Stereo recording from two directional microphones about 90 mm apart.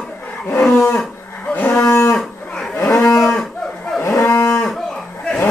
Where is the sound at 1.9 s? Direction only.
30° left (ahead or behind).